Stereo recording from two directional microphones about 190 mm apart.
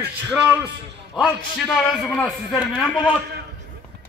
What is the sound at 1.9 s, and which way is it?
Speech, centre (ahead or behind).